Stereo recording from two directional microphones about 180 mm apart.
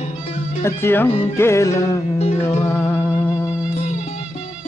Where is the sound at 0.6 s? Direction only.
10° left (ahead or behind).